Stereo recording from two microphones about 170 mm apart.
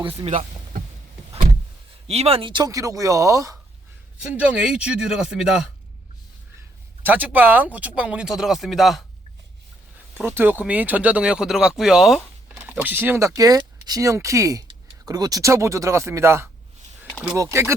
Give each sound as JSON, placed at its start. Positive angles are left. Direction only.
{"t": 2.0, "sound": "speech", "side_deg": -35}
{"t": 4.2, "sound": "a man's voice", "side_deg": -5}
{"t": 7.0, "sound": "speech", "side_deg": -10}
{"t": 10.2, "sound": "speech", "side_deg": -10}